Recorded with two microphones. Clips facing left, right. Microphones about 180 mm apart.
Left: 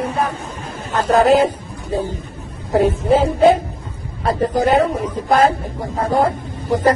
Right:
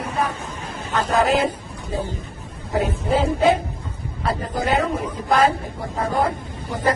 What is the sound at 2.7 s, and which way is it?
Speech, 40° left (ahead or behind).